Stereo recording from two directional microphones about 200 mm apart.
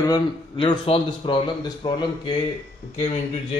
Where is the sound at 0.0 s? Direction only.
20° left (ahead or behind).